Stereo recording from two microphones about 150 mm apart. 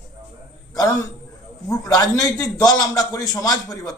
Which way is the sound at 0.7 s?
25° left (ahead or behind).